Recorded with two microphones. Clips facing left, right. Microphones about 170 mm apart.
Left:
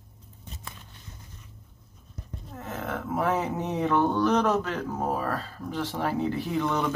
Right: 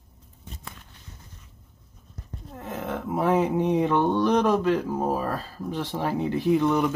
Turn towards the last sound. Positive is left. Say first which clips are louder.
# right 6 dB
turn(degrees=-15)  # may be behind; listen again after turning